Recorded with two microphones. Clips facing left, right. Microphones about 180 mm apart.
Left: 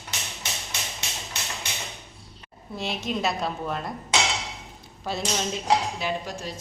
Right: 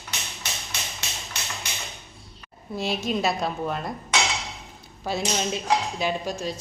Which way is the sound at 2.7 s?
5° right (ahead or behind).